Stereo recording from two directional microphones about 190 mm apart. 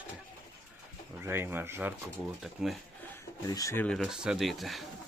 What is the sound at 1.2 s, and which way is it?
Speech, 10° right (ahead or behind).